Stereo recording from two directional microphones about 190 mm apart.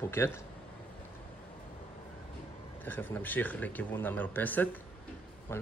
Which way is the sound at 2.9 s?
10° left (ahead or behind).